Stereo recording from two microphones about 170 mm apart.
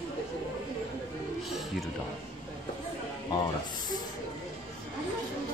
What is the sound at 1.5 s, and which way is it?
Music, centre (ahead or behind).